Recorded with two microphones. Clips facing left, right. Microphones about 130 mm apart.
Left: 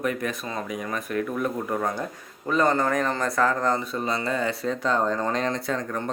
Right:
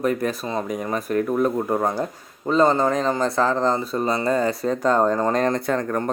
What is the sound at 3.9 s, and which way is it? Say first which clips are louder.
Speech: right 6 dB; 40° right (ahead or behind).